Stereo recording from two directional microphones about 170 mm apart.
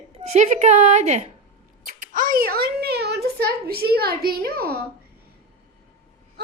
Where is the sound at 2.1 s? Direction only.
50° right (ahead or behind).